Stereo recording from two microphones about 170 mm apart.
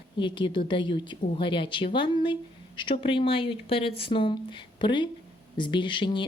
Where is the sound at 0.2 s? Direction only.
30° left (ahead or behind).